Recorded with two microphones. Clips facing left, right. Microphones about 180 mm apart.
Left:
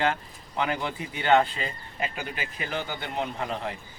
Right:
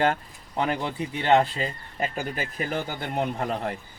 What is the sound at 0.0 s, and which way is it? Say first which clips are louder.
Speech: right 3 dB; 40° right (ahead or behind).